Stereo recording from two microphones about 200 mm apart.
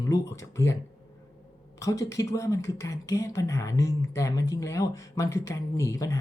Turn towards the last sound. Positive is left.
turn(degrees=15)  # may be behind; listen again after turning